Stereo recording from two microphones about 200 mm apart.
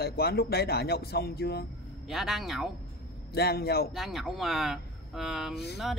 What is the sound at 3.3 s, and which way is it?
Speech, 50° left (ahead or behind).